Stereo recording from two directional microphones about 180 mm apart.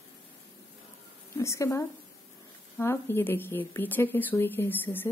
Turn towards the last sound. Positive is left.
turn(degrees=10)  # may be behind; listen again after turning